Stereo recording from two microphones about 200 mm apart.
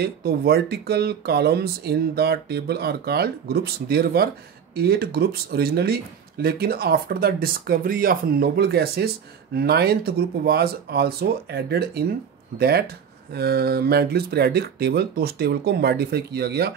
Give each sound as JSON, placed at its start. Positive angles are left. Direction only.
{"t": 0.0, "sound": "speech", "side_deg": -55}